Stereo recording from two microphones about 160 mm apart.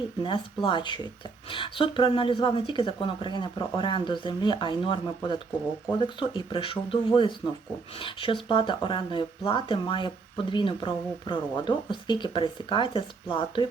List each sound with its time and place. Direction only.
0.2 s speech: 30° left (ahead or behind)